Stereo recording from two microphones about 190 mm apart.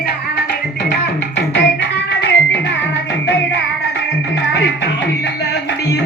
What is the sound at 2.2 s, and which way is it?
Music, 70° left (ahead or behind).